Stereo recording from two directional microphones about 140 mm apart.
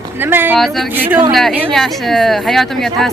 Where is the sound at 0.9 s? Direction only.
15° right (ahead or behind).